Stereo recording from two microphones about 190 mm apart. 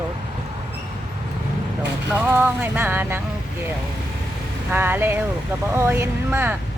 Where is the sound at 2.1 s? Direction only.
10° right (ahead or behind).